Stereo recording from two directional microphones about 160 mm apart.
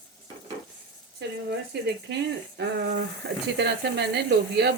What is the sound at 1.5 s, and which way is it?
Speech, 90° right.